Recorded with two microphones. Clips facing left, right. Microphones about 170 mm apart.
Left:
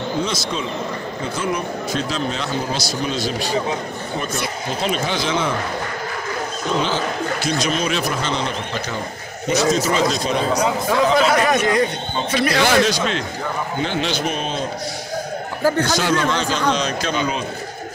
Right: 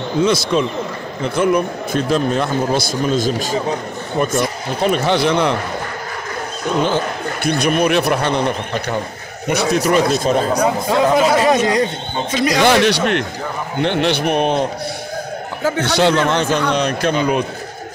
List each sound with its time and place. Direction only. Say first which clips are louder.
1.3 s speech: right 9 dB; 60° right (ahead or behind)
7.4 s speech: right 8 dB; 60° right (ahead or behind)
10.9 s speech: right 2 dB; 20° right (ahead or behind)
12.6 s speech: right 4 dB; 65° right (ahead or behind)
15.9 s speech: right 4 dB; 65° right (ahead or behind)